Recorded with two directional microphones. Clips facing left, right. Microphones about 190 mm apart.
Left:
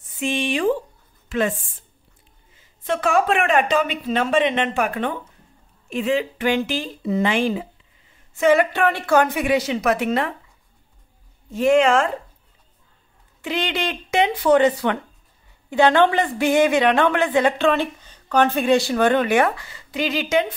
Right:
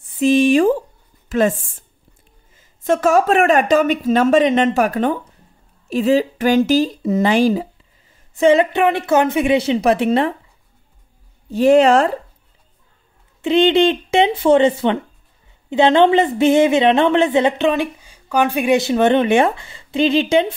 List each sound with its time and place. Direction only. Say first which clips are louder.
0.2 s speech: right 9 dB; 40° right (ahead or behind)
8.4 s a woman's voice: right 4 dB; 25° right (ahead or behind)
11.5 s speech: right 5 dB; 35° right (ahead or behind)
13.4 s a woman's voice: right 12 dB; 25° right (ahead or behind)